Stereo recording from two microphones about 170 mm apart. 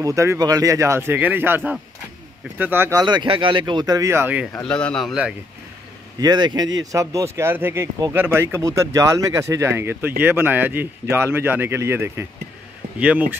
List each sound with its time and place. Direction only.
0.0 s speech: 15° right (ahead or behind)
4.6 s a man's voice: 5° left (ahead or behind)
6.2 s speech: 25° right (ahead or behind)